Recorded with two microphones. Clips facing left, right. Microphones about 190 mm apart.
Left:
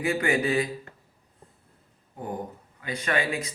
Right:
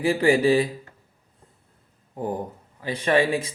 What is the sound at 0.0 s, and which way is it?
Speech, 30° right (ahead or behind).